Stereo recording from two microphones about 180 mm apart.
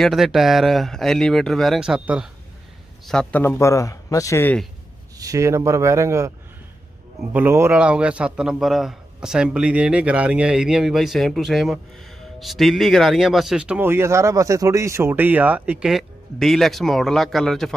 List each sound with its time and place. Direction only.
0.0 s a man's voice: centre (ahead or behind)
3.1 s speech: 5° left (ahead or behind)
5.1 s a man's voice: 20° right (ahead or behind)
7.3 s a man's voice: 10° right (ahead or behind)